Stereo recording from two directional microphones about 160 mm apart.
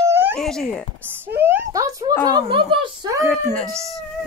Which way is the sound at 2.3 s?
35° right (ahead or behind).